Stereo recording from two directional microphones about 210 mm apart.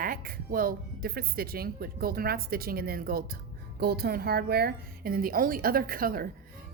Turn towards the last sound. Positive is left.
turn(degrees=-45)  # may be behind; listen again after turning